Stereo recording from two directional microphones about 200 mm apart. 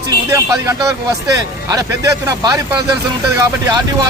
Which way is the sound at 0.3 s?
15° right (ahead or behind).